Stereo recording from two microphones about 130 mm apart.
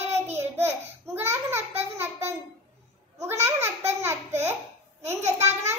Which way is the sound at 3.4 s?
20° right (ahead or behind).